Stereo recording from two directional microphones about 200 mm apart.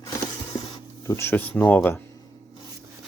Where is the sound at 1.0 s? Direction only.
15° left (ahead or behind).